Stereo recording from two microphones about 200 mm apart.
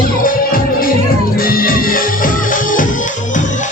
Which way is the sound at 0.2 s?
45° left (ahead or behind).